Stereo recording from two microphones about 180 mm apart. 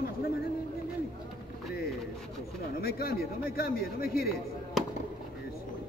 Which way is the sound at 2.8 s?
60° left (ahead or behind).